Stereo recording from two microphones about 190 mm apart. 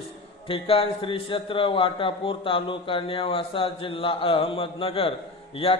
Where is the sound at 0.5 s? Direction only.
30° left (ahead or behind).